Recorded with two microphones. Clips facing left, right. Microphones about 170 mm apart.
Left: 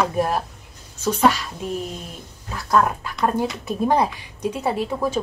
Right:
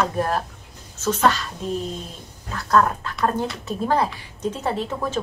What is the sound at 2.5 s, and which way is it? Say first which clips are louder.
A woman's voice: even; 10° left (ahead or behind).